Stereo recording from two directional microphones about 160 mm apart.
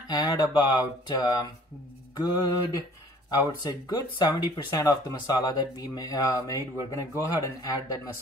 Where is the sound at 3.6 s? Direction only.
25° left (ahead or behind).